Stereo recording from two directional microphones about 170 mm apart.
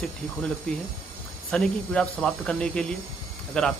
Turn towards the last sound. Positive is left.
turn(degrees=5)  # may be behind; listen again after turning